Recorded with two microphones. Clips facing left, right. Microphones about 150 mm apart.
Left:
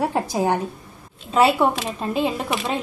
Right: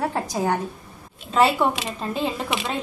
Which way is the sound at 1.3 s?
5° left (ahead or behind).